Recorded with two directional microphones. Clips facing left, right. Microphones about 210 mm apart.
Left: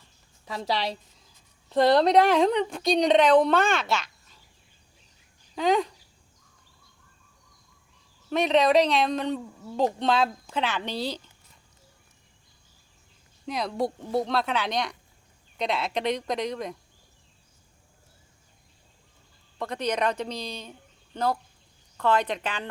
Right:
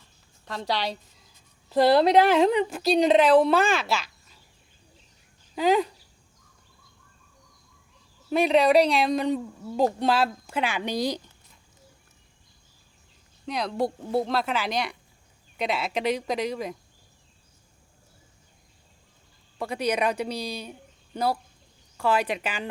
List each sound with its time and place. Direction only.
0.4 s speech: 5° left (ahead or behind)
5.5 s speech: 5° right (ahead or behind)
8.3 s speech: 10° right (ahead or behind)
13.4 s speech: centre (ahead or behind)
19.5 s speech: 10° right (ahead or behind)